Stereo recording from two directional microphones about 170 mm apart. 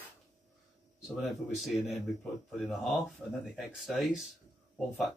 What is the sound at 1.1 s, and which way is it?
Speech, centre (ahead or behind).